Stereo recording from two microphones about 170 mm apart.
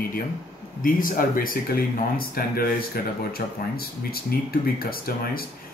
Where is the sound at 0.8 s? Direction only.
55° left (ahead or behind).